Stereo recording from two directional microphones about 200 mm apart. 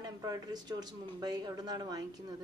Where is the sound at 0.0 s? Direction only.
20° right (ahead or behind).